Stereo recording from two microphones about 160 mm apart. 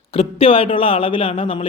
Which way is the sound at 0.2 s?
35° left (ahead or behind).